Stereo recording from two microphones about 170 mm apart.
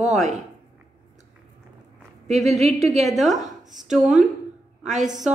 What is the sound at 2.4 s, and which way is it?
Speech, 40° right (ahead or behind).